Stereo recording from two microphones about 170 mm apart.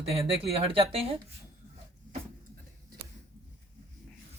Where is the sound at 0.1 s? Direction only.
35° right (ahead or behind).